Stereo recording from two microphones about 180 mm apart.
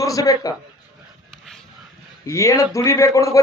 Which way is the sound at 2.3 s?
15° left (ahead or behind).